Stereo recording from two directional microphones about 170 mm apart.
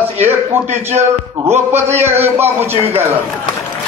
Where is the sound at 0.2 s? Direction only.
40° right (ahead or behind).